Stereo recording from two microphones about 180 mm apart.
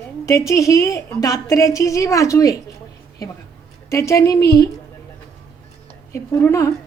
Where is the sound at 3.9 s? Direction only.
15° left (ahead or behind).